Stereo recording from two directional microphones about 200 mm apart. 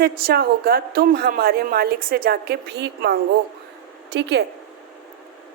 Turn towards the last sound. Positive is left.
turn(degrees=-55)  # may be behind; listen again after turning